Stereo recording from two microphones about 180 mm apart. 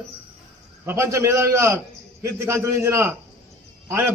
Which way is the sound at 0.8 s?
15° right (ahead or behind).